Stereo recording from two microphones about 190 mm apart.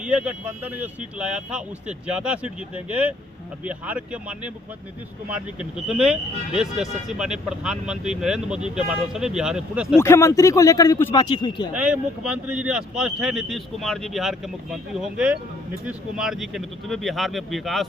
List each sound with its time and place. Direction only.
0.0 s speech: 5° right (ahead or behind)
10.0 s a man's voice: 15° left (ahead or behind)
11.7 s speech: 5° right (ahead or behind)